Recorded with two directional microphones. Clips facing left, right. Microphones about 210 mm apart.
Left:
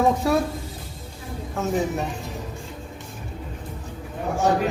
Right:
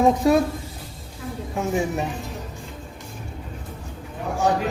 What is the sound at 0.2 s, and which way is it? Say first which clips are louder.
Speech: right 4 dB; 20° right (ahead or behind).